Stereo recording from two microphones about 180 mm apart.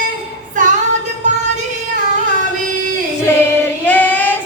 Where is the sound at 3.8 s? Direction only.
10° left (ahead or behind).